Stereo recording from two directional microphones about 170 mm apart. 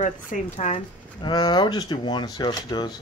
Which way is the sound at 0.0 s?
45° left (ahead or behind).